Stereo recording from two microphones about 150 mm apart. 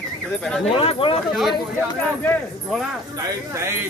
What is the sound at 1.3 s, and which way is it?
Speech, centre (ahead or behind).